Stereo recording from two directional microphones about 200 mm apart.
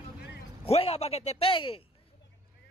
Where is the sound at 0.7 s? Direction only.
30° left (ahead or behind).